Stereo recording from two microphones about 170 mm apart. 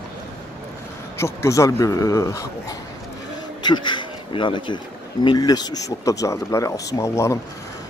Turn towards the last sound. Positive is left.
turn(degrees=15)  # may be behind; listen again after turning